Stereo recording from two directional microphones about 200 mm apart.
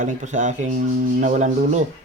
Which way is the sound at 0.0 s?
35° right (ahead or behind).